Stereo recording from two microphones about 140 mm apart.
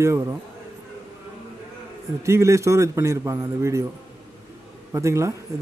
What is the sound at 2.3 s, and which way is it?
A man's voice, 20° right (ahead or behind).